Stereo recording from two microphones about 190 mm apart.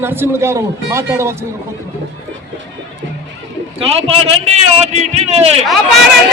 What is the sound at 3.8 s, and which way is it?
A man's voice, 35° right (ahead or behind).